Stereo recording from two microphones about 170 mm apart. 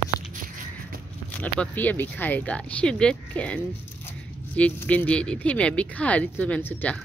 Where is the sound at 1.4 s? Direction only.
10° left (ahead or behind).